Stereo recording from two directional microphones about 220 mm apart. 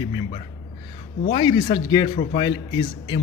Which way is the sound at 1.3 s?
20° left (ahead or behind).